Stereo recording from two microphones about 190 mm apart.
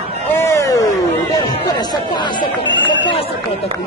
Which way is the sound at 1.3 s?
20° left (ahead or behind).